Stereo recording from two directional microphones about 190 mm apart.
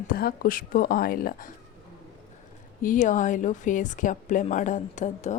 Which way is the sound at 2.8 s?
45° left (ahead or behind).